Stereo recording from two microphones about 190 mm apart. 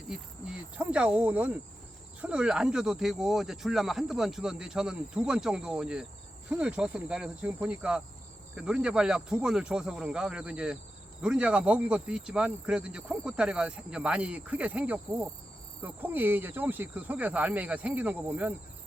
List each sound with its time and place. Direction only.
0.1 s speech: 5° right (ahead or behind)